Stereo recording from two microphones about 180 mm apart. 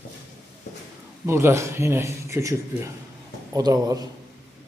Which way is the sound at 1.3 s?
15° right (ahead or behind).